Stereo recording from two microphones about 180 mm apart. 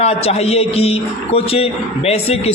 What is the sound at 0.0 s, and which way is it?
A man's voice, 35° left (ahead or behind).